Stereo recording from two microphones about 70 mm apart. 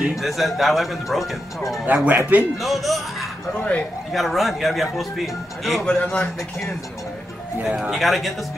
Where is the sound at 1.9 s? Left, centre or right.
Right.